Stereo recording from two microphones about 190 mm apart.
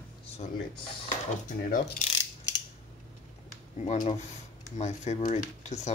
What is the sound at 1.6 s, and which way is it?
Mechanisms, 50° left (ahead or behind).